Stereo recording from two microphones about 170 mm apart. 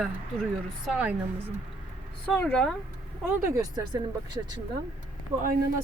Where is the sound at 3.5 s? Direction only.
25° right (ahead or behind).